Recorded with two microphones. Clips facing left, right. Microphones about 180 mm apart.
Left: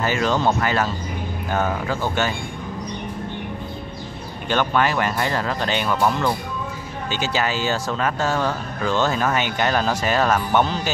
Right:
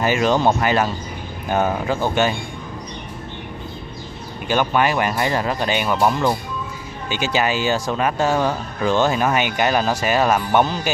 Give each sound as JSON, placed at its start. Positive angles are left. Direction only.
{"t": 0.0, "sound": "speech", "side_deg": -15}
{"t": 4.5, "sound": "speech", "side_deg": -10}